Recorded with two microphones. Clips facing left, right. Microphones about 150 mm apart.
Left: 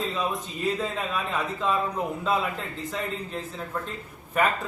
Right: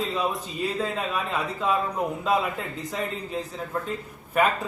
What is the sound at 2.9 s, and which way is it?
A man's voice, 10° right (ahead or behind).